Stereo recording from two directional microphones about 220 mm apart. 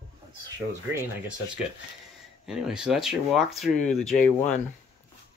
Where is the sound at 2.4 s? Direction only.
5° right (ahead or behind).